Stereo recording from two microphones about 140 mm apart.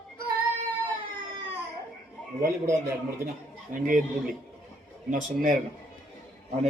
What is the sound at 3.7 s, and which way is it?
Speech, 70° right (ahead or behind).